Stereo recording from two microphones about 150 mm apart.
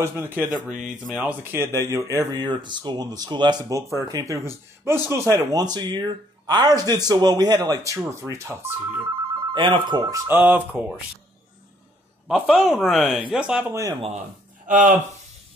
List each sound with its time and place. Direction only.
0.0 s speech: 15° right (ahead or behind)
9.5 s speech: 30° right (ahead or behind)
10.2 s speech: 15° right (ahead or behind)
12.3 s speech: 5° right (ahead or behind)
14.7 s speech: 60° right (ahead or behind)